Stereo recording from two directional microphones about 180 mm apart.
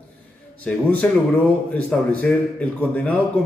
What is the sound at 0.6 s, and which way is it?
A man's voice, 10° left (ahead or behind).